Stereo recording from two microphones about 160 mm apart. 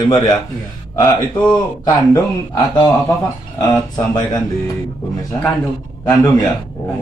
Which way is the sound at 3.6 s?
25° left (ahead or behind).